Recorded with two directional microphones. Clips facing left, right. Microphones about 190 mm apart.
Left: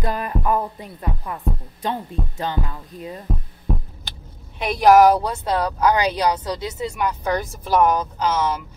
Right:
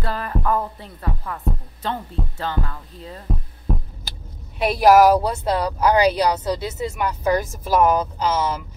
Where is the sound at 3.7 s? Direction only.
Centre (ahead or behind).